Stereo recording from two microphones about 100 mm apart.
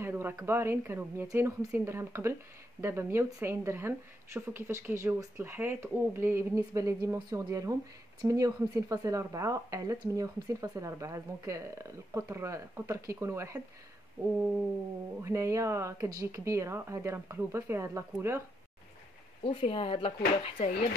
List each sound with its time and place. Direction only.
0.0 s speech: 20° right (ahead or behind)
15.2 s speech: 30° right (ahead or behind)
19.4 s speech: 65° left (ahead or behind)